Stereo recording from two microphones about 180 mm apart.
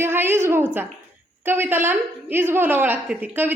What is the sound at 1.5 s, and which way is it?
A woman's voice, 10° right (ahead or behind).